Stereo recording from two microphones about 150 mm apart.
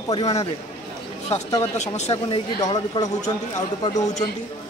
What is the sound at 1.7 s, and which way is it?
Speech, 50° left (ahead or behind).